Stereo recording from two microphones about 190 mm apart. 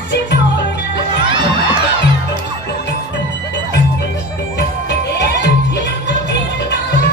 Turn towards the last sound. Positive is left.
turn(degrees=65)  # may be behind; listen again after turning